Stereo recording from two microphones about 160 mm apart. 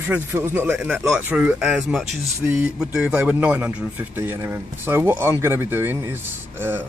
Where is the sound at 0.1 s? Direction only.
15° right (ahead or behind).